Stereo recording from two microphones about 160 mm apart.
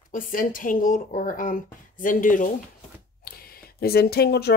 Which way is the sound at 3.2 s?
75° left (ahead or behind).